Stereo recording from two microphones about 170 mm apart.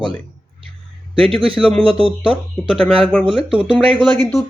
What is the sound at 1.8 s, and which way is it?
Speech, 30° right (ahead or behind).